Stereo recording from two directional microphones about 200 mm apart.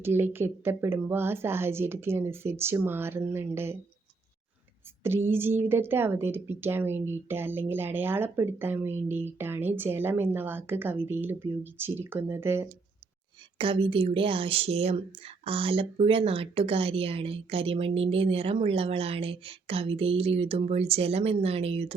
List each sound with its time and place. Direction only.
0.0 s speech: 10° right (ahead or behind)
5.0 s speech: 10° right (ahead or behind)
13.6 s speech: 25° right (ahead or behind)